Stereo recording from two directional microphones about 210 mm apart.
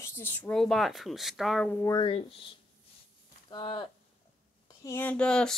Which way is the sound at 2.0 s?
25° left (ahead or behind).